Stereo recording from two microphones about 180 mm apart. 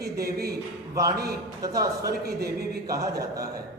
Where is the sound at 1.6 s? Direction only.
20° right (ahead or behind).